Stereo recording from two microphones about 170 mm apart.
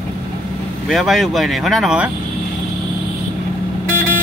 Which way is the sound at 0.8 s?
Centre (ahead or behind).